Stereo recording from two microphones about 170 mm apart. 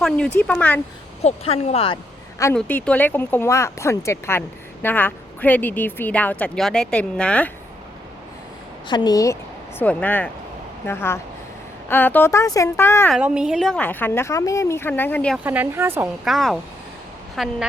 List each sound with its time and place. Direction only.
0.3 s speech: 10° left (ahead or behind)
1.2 s speech: 40° left (ahead or behind)
2.6 s speech: 10° left (ahead or behind)
8.9 s speech: 25° left (ahead or behind)
13.1 s speech: 5° right (ahead or behind)
15.4 s speech: 10° right (ahead or behind)
16.2 s speech: centre (ahead or behind)